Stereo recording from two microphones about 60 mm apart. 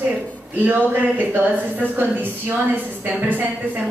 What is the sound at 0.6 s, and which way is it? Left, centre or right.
A woman's voice, right.